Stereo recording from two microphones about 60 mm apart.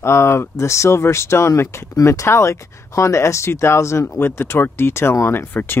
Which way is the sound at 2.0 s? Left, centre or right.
Left.